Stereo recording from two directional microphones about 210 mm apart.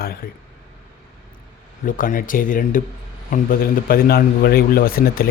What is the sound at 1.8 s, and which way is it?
A man's voice, 40° left (ahead or behind).